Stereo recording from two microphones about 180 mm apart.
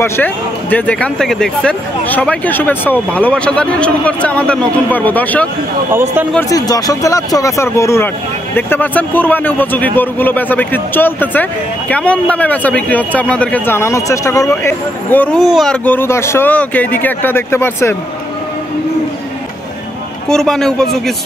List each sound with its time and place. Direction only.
0.0 s a man's voice: 10° left (ahead or behind)
6.5 s a man's voice: 20° left (ahead or behind)
20.2 s a man's voice: 5° left (ahead or behind)